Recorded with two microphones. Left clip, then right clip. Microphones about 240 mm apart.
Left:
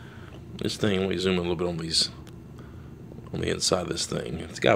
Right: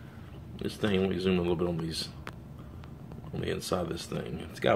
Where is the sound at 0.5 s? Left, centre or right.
Left.